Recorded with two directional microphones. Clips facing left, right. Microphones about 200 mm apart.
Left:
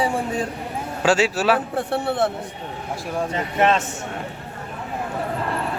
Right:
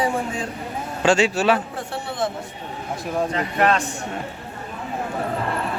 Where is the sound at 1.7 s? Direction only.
60° left (ahead or behind).